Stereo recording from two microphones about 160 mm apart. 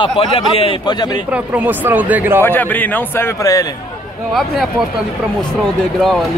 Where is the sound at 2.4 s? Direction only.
10° left (ahead or behind).